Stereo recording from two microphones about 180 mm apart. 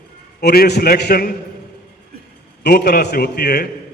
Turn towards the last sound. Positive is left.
turn(degrees=65)  # may be behind; listen again after turning